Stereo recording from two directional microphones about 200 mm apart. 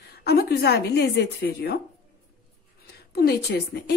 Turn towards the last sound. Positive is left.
turn(degrees=55)  # may be behind; listen again after turning